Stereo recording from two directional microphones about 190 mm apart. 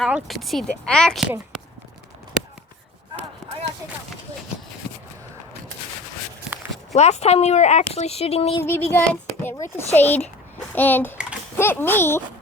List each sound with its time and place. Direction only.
0.0 s speech: centre (ahead or behind)
6.9 s speech: 35° left (ahead or behind)
8.6 s a child's voice: 10° left (ahead or behind)